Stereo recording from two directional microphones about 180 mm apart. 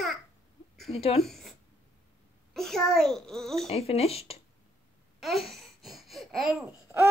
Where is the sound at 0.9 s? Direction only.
35° left (ahead or behind).